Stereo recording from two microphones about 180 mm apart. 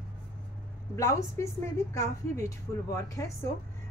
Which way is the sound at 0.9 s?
15° left (ahead or behind).